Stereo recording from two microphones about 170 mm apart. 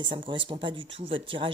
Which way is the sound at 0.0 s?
30° right (ahead or behind).